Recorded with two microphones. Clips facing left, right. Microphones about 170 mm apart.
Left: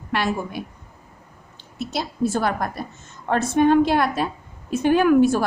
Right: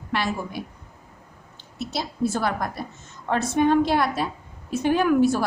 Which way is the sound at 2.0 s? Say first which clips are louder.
Left 2 dB; 50° left (ahead or behind).